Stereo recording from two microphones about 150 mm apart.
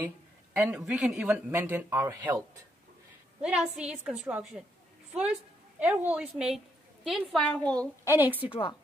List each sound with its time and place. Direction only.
0.0 s speech: 10° right (ahead or behind)
3.4 s speech: 5° right (ahead or behind)
5.8 s a woman's voice: 10° right (ahead or behind)
8.1 s speech: 10° right (ahead or behind)
8.5 s a woman's voice: 35° left (ahead or behind)